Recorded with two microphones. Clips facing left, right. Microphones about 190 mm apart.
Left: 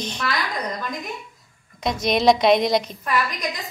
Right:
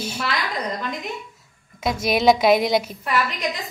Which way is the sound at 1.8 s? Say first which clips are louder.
Even; 5° right (ahead or behind).